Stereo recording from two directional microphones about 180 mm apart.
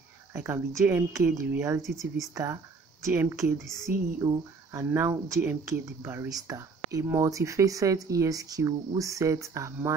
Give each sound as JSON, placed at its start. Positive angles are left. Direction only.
{"t": 0.3, "sound": "speech", "side_deg": -15}
{"t": 1.8, "sound": "speech", "side_deg": 0}
{"t": 2.3, "sound": "speech", "side_deg": -15}
{"t": 3.9, "sound": "speech", "side_deg": -50}
{"t": 4.7, "sound": "speech", "side_deg": -15}